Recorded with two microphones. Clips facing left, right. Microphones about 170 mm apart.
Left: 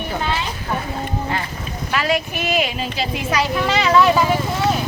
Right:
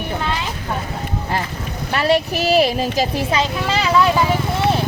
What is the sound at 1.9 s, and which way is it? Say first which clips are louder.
Speech: right 4 dB; 35° right (ahead or behind).